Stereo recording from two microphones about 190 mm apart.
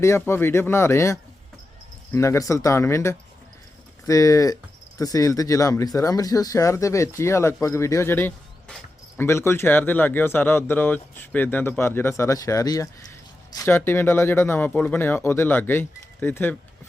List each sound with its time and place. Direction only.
0.0 s speech: 15° left (ahead or behind)